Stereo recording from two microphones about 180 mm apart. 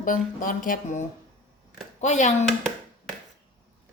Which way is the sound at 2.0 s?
40° left (ahead or behind).